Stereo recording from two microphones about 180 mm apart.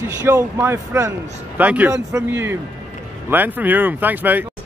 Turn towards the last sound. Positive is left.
turn(degrees=-10)  # may be behind; listen again after turning